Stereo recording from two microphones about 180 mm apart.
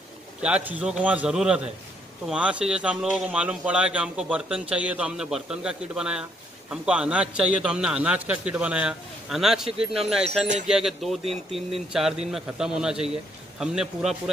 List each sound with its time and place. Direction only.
0.4 s a man's voice: 5° right (ahead or behind)